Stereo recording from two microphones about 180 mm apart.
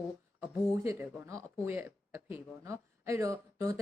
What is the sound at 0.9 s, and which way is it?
Speech, 15° right (ahead or behind).